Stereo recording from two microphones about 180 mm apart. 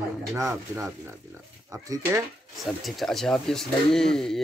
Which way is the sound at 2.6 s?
Centre (ahead or behind).